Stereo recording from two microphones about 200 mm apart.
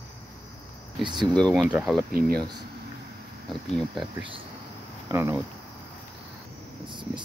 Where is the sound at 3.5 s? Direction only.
Centre (ahead or behind).